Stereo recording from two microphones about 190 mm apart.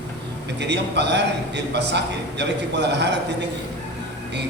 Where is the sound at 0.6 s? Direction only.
65° right (ahead or behind).